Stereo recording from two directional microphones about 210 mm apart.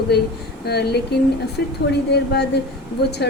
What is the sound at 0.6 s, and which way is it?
A woman's voice, 50° left (ahead or behind).